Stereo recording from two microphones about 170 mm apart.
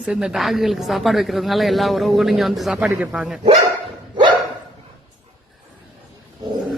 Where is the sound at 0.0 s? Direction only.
5° right (ahead or behind).